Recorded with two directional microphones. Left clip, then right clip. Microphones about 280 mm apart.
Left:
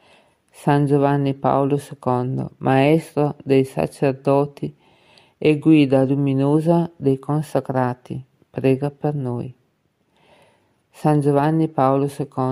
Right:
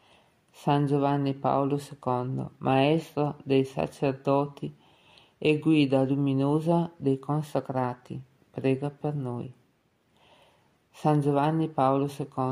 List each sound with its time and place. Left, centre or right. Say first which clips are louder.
0.1 s speech: left 6 dB; left
11.0 s speech: left 7 dB; left